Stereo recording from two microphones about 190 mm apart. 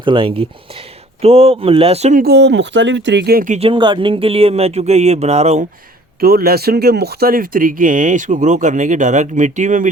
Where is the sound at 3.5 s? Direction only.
30° right (ahead or behind).